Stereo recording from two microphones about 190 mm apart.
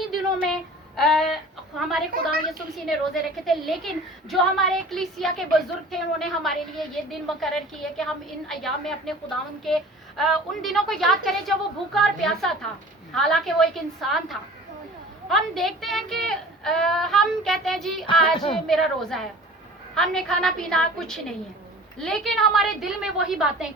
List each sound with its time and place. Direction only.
0.4 s child singing: centre (ahead or behind)
1.8 s a woman's voice: centre (ahead or behind)
18.3 s speech: 30° left (ahead or behind)
18.7 s a woman's voice: centre (ahead or behind)